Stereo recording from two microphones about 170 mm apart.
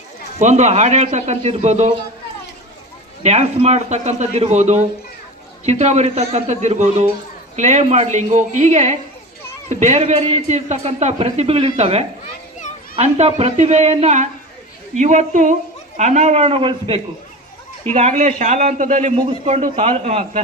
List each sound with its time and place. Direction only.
0.3 s speech: 45° right (ahead or behind)
3.2 s a woman's voice: 40° right (ahead or behind)
17.9 s a woman's voice: 40° right (ahead or behind)
19.1 s speech: 30° right (ahead or behind)